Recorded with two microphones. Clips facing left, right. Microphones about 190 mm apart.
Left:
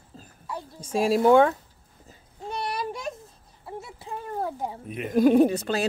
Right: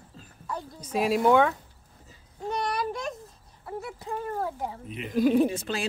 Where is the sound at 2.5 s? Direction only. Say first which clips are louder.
Right 1 dB; 5° left (ahead or behind).